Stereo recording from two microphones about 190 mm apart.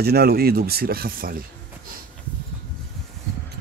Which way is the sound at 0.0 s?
55° right (ahead or behind).